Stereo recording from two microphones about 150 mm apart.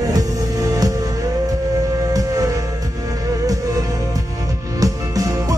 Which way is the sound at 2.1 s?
25° right (ahead or behind).